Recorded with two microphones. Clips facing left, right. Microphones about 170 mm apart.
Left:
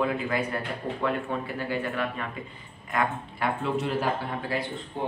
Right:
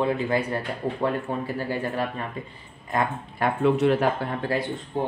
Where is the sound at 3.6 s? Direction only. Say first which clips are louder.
Right 11 dB; 65° right (ahead or behind).